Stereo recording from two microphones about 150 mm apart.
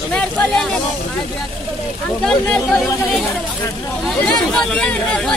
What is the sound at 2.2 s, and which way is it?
Speech, 5° left (ahead or behind).